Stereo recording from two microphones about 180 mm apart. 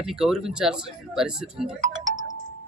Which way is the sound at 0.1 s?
5° right (ahead or behind).